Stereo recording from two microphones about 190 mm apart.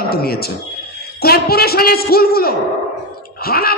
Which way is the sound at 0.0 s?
55° left (ahead or behind).